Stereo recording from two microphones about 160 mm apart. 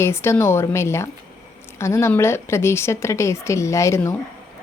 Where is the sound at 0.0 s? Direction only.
15° left (ahead or behind).